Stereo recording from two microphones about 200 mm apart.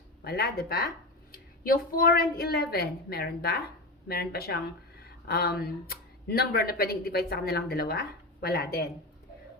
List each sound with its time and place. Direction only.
0.3 s a woman's voice: 50° left (ahead or behind)